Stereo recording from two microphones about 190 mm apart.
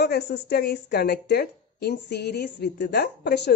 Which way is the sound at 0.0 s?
60° left (ahead or behind).